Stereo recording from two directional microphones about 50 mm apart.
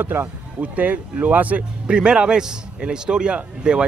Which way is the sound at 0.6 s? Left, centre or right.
Right.